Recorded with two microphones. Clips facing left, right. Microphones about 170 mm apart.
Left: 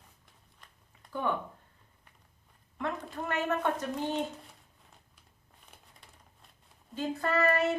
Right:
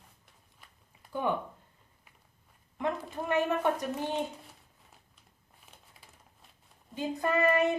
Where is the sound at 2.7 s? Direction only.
15° right (ahead or behind).